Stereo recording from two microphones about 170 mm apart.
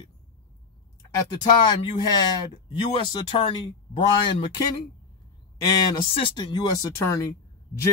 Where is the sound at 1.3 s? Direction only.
25° left (ahead or behind).